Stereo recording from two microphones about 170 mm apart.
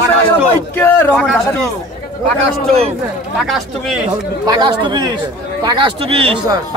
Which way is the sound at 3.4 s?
Centre (ahead or behind).